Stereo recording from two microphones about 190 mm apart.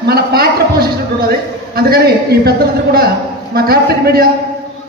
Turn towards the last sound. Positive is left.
turn(degrees=-55)  # may be behind; listen again after turning